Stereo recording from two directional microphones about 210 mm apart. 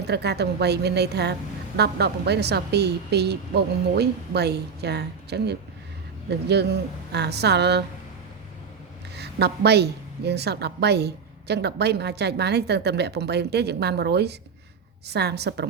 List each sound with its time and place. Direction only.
0.1 s a woman's voice: 50° right (ahead or behind)
9.1 s a woman's voice: 50° right (ahead or behind)